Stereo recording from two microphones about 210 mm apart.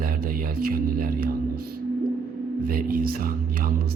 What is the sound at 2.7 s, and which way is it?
Speech, 45° right (ahead or behind).